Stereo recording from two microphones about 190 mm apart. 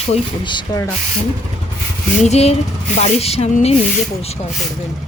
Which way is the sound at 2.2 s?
35° left (ahead or behind).